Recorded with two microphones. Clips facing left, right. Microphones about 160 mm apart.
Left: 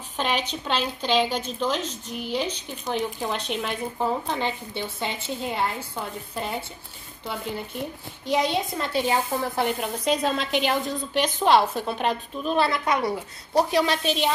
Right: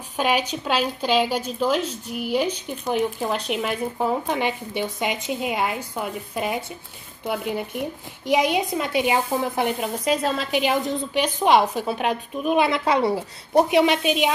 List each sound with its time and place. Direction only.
0.2 s a woman's voice: 10° right (ahead or behind)
12.8 s a woman's voice: 30° right (ahead or behind)
14.0 s a woman's voice: 10° right (ahead or behind)